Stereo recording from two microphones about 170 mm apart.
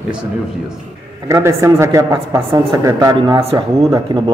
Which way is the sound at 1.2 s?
15° right (ahead or behind).